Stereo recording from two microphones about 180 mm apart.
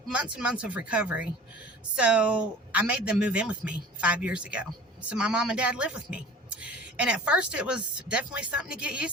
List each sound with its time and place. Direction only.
0.1 s a woman's voice: 5° right (ahead or behind)